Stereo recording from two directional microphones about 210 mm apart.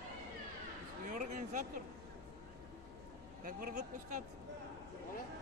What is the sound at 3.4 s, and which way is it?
Speech, 45° right (ahead or behind).